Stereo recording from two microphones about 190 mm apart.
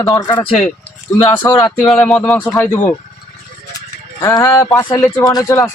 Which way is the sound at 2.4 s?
20° left (ahead or behind).